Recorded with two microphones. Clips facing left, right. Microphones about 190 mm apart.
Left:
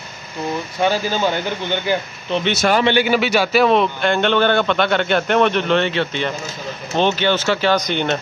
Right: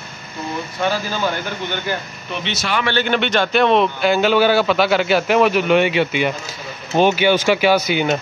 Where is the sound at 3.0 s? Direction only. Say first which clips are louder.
Left 1 dB; 5° left (ahead or behind).